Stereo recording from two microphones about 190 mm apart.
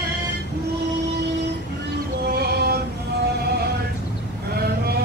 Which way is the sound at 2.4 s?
55° right (ahead or behind).